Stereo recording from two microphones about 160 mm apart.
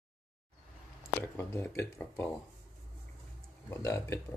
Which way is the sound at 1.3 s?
15° left (ahead or behind).